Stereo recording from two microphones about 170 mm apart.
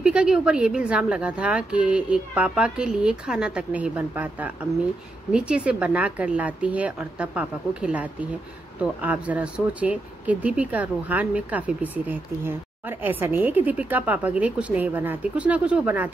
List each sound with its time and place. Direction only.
0.0 s a woman's voice: 5° right (ahead or behind)